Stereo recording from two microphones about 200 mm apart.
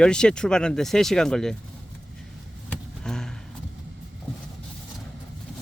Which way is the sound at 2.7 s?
5° left (ahead or behind).